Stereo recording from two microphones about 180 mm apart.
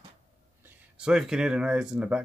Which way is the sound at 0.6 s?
5° right (ahead or behind).